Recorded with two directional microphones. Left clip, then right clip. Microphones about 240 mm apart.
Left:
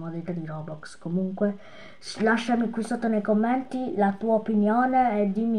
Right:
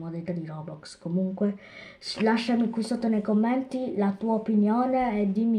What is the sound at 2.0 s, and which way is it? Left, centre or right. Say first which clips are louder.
Speech: left 2 dB; centre.